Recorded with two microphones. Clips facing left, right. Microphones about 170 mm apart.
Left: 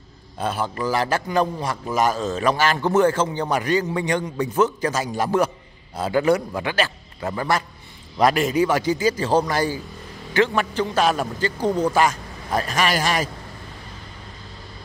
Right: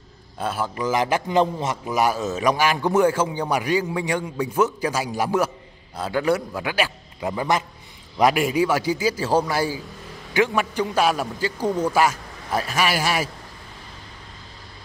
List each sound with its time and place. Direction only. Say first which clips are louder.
0.4 s a man's voice: left 1 dB; centre (ahead or behind)
0.8 s a man's voice: right 1 dB; 15° right (ahead or behind)
2.0 s a man's voice: left 1 dB; 10° right (ahead or behind)
5.9 s a man's voice: left 3 dB; centre (ahead or behind)